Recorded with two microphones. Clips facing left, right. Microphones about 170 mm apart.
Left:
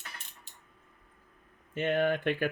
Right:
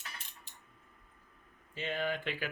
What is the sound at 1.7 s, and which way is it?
Speech, 60° left (ahead or behind).